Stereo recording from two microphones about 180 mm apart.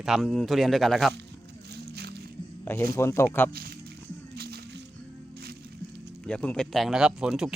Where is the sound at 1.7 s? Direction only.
65° right (ahead or behind).